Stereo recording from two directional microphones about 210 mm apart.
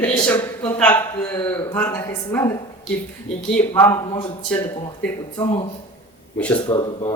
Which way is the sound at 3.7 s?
15° left (ahead or behind).